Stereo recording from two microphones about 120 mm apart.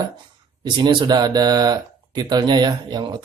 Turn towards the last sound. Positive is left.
turn(degrees=-35)  # may be behind; listen again after turning